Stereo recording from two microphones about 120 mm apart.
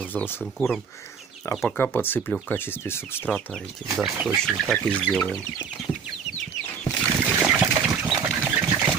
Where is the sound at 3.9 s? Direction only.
10° right (ahead or behind).